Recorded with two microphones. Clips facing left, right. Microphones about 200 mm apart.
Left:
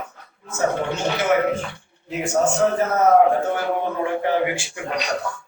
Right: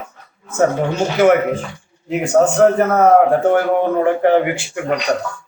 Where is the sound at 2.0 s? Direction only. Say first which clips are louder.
Right 6 dB; 65° right (ahead or behind).